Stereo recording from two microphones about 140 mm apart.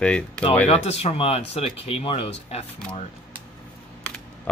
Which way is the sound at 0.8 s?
50° left (ahead or behind).